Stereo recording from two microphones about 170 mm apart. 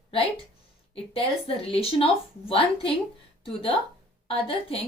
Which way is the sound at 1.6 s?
35° left (ahead or behind).